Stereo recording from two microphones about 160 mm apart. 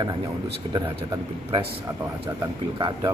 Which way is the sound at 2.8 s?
25° right (ahead or behind).